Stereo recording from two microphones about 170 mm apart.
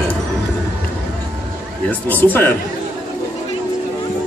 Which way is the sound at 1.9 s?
10° left (ahead or behind).